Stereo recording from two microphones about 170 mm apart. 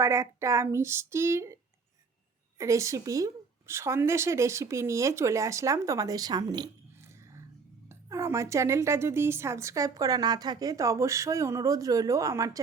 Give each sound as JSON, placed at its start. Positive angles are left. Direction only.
{"t": 0.0, "sound": "a woman's voice", "side_deg": -15}
{"t": 2.6, "sound": "a woman's voice", "side_deg": -20}